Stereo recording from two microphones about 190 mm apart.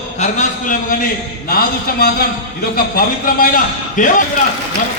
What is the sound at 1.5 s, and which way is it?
A man's voice, 55° left (ahead or behind).